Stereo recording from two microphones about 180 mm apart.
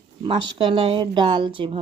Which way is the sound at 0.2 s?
25° right (ahead or behind).